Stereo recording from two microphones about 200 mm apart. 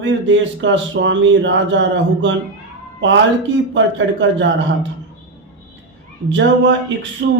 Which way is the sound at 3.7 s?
65° right (ahead or behind).